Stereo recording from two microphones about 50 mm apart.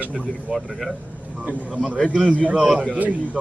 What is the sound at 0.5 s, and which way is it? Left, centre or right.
Speech, centre.